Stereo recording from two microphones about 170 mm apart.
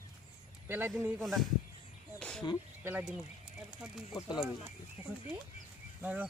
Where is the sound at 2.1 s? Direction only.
5° left (ahead or behind).